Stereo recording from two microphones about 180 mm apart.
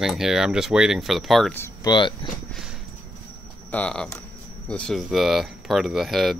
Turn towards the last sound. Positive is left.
turn(degrees=0)  # may be behind; listen again after turning